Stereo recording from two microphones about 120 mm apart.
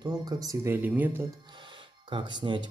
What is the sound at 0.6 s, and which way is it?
Speech, 15° right (ahead or behind).